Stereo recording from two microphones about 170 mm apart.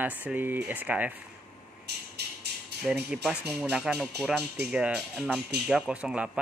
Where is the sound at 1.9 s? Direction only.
75° right (ahead or behind).